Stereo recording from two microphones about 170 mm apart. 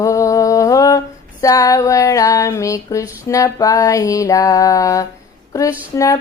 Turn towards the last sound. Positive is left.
turn(degrees=20)  # may be behind; listen again after turning